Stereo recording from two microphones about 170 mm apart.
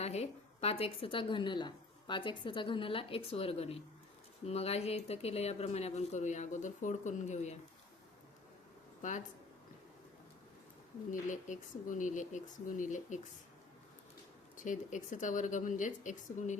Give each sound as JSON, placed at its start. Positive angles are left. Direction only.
{"t": 0.0, "sound": "a woman's voice", "side_deg": 40}
{"t": 9.0, "sound": "speech", "side_deg": 50}
{"t": 11.1, "sound": "speech", "side_deg": 50}
{"t": 14.5, "sound": "speech", "side_deg": 50}